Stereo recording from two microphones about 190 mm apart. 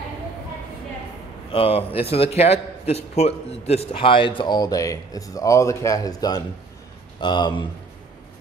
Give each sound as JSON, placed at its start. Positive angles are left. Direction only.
{"t": 1.5, "sound": "a man's voice", "side_deg": 30}